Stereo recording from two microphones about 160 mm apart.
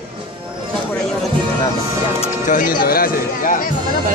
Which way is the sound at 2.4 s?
60° left (ahead or behind).